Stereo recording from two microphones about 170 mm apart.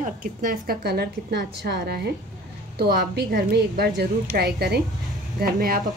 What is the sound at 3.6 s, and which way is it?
A woman's voice, 70° right (ahead or behind).